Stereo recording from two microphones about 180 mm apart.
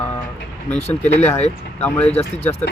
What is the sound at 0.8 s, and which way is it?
Speech, 35° left (ahead or behind).